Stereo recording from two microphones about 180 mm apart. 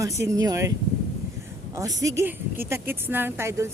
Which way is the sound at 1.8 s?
20° right (ahead or behind).